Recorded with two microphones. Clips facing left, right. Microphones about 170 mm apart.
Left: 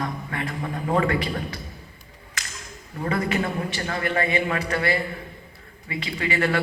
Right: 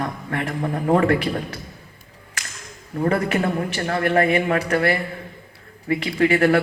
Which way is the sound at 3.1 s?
60° right (ahead or behind).